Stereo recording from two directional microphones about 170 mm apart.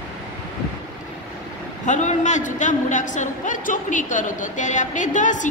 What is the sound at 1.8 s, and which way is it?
A woman's voice, 45° left (ahead or behind).